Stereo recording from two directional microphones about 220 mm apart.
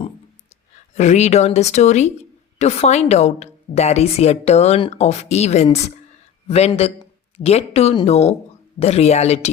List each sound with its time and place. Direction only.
0.9 s a woman's voice: 30° left (ahead or behind)